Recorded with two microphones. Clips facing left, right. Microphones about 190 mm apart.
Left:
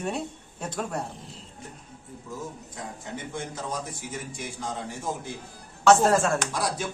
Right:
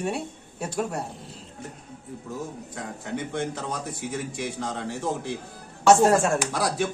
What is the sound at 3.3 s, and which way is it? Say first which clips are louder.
Speech: right 2 dB; 65° right (ahead or behind).